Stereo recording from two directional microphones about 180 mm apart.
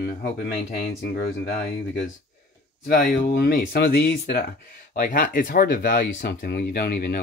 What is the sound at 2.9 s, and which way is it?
Speech, 55° left (ahead or behind).